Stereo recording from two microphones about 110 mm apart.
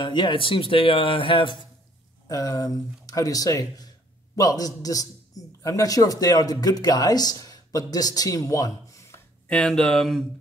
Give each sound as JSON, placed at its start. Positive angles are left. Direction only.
{"t": 0.0, "sound": "speech", "side_deg": 45}
{"t": 2.2, "sound": "a man's voice", "side_deg": 35}
{"t": 9.5, "sound": "speech", "side_deg": 5}